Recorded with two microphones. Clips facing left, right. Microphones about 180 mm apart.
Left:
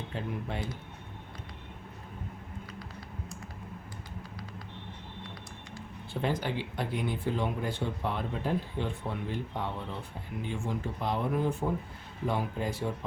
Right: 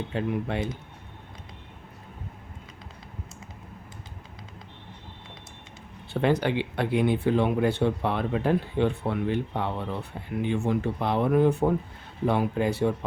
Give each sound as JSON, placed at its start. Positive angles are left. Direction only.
{"t": 0.1, "sound": "speech", "side_deg": -70}
{"t": 6.2, "sound": "speech", "side_deg": -70}